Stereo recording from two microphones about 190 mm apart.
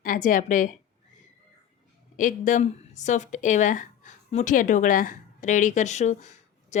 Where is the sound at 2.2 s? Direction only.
40° left (ahead or behind).